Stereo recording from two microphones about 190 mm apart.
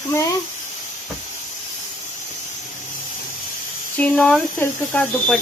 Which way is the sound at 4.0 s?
5° left (ahead or behind).